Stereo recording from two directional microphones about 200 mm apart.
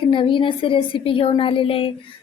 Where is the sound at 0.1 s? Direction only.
25° left (ahead or behind).